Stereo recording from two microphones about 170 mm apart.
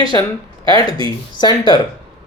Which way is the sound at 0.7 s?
25° left (ahead or behind).